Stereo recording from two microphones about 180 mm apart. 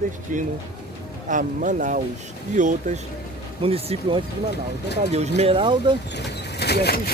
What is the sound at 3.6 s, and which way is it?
Speech, 30° right (ahead or behind).